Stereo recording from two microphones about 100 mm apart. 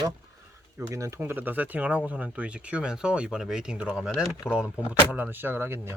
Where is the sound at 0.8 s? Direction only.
30° right (ahead or behind).